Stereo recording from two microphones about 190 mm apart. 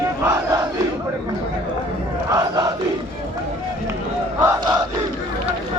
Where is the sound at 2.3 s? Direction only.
20° right (ahead or behind).